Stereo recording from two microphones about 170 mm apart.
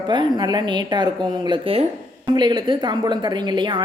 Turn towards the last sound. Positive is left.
turn(degrees=-25)  # may be behind; listen again after turning